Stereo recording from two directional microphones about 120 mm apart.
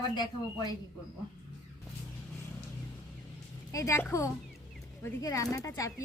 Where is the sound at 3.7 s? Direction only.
25° left (ahead or behind).